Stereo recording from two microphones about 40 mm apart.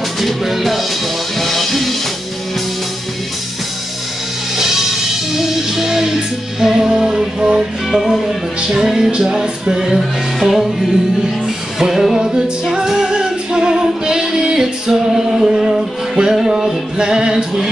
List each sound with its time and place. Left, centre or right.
0.2 s music: centre
4.6 s music: centre
7.9 s music: centre
8.5 s music: centre
9.9 s music: centre